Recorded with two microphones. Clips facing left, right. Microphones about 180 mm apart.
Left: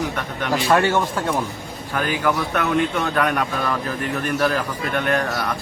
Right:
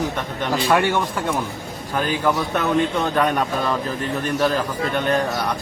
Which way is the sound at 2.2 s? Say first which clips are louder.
Even; 20° right (ahead or behind).